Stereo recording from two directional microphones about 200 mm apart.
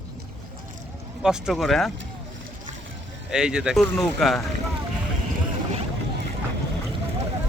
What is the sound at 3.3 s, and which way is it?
Speech, 5° right (ahead or behind).